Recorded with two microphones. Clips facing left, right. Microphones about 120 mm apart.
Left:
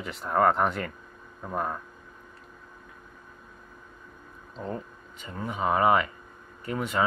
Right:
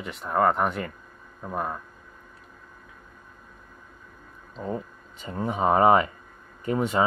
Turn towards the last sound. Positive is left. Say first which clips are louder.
# right 6 dB
turn(degrees=-25)  # may be behind; listen again after turning